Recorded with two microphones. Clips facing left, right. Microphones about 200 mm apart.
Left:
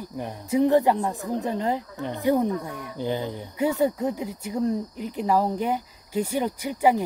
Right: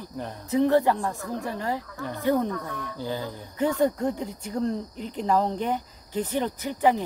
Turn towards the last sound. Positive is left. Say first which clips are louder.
# left 1 dB
turn(degrees=10)  # may be behind; listen again after turning